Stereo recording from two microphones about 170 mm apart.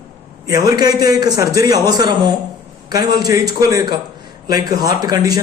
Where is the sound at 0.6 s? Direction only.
20° right (ahead or behind).